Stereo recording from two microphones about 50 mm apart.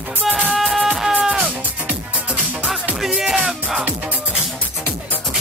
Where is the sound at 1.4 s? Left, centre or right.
Right.